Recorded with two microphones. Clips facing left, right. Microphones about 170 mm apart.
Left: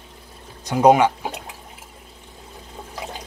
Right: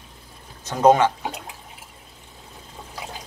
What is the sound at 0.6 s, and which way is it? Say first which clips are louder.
Speech: left 2 dB; 10° left (ahead or behind).